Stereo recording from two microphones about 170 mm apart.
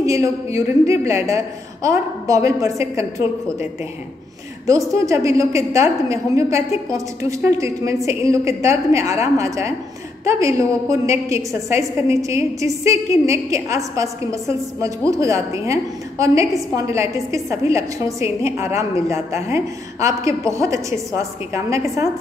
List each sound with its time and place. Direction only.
0.0 s a woman's voice: 20° right (ahead or behind)
4.6 s a woman's voice: 20° right (ahead or behind)